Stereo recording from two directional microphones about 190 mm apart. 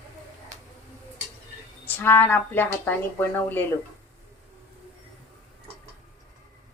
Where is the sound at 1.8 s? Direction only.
10° left (ahead or behind).